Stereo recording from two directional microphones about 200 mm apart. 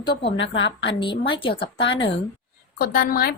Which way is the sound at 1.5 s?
60° left (ahead or behind).